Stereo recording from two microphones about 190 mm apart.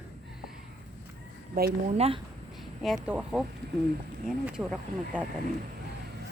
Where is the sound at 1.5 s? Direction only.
50° right (ahead or behind).